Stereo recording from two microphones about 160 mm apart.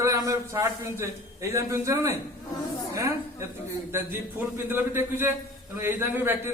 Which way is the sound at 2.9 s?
20° right (ahead or behind).